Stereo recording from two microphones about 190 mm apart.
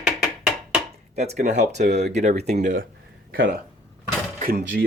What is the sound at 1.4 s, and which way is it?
Speech, 40° right (ahead or behind).